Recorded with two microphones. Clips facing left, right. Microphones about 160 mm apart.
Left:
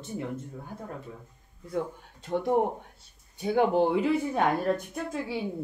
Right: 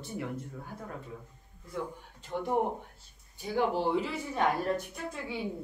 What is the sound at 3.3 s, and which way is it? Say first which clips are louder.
Speech: left 6 dB; 60° left (ahead or behind).